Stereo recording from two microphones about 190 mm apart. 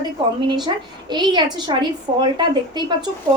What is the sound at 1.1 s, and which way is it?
A woman's voice, 25° right (ahead or behind).